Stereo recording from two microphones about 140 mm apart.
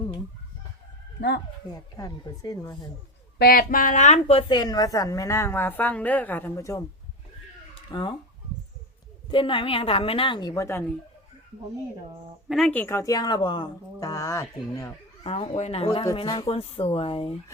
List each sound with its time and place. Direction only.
1.7 s a woman's voice: 25° left (ahead or behind)
3.5 s a woman's voice: 90° left; by 6.8 s 20° left (ahead or behind)
7.8 s a sound: 35° left (ahead or behind)
9.3 s a woman's voice: 35° left (ahead or behind); by 10.8 s 20° left (ahead or behind)
12.5 s speech: 5° left (ahead or behind)
12.8 s a woman's voice: 20° left (ahead or behind)
15.2 s speech: 45° left (ahead or behind)
16.1 s a woman's voice: 30° left (ahead or behind)
16.5 s speech: 45° left (ahead or behind)